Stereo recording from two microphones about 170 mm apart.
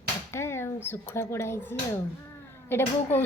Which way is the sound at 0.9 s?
15° left (ahead or behind).